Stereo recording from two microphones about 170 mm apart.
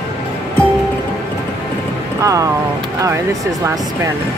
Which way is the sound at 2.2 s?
20° right (ahead or behind).